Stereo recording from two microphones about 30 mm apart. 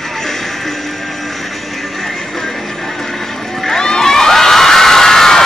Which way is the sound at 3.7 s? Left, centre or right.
Left.